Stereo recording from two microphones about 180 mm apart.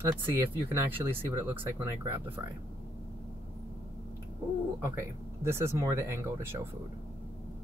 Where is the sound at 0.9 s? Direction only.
15° right (ahead or behind).